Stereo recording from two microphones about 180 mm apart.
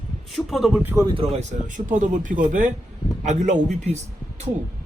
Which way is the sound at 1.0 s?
30° right (ahead or behind).